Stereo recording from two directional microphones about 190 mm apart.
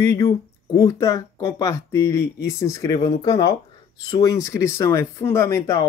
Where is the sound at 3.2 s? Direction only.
20° left (ahead or behind).